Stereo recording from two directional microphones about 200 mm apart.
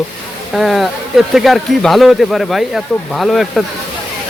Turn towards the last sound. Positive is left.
turn(degrees=0)  # may be behind; listen again after turning